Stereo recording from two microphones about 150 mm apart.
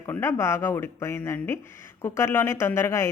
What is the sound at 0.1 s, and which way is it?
A woman's voice, 15° left (ahead or behind).